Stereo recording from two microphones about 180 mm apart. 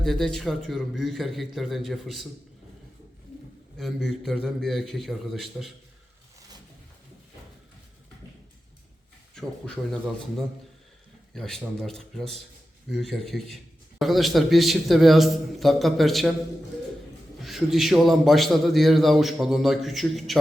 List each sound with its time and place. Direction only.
0.0 s a man's voice: centre (ahead or behind)
3.8 s a man's voice: centre (ahead or behind)
9.3 s a man's voice: 5° left (ahead or behind)
17.4 s a man's voice: centre (ahead or behind)